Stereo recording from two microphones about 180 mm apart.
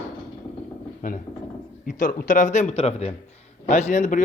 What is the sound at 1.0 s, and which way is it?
A man's voice, 45° left (ahead or behind).